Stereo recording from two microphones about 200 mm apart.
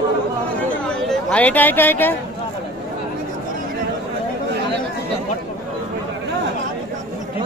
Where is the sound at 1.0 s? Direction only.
5° left (ahead or behind).